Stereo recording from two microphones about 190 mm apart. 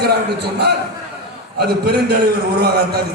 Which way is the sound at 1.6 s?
55° right (ahead or behind).